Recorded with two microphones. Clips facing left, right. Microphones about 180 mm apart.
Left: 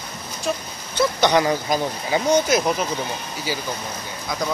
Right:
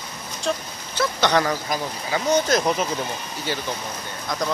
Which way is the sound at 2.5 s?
5° left (ahead or behind).